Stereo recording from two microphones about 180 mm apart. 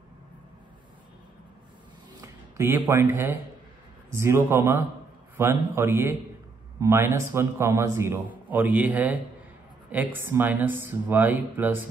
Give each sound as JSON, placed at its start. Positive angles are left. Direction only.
{"t": 2.2, "sound": "a man's voice", "side_deg": -15}